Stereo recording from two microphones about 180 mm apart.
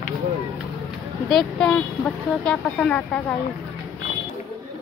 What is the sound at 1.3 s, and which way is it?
Speech, 5° left (ahead or behind).